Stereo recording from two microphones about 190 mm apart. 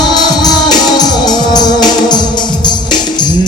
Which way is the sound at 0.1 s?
20° left (ahead or behind).